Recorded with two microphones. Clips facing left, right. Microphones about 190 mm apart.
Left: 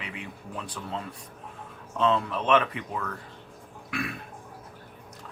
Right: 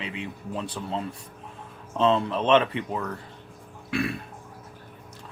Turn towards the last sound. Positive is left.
turn(degrees=-30)  # may be behind; listen again after turning